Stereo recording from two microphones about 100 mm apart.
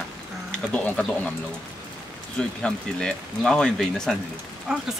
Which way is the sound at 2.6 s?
10° left (ahead or behind).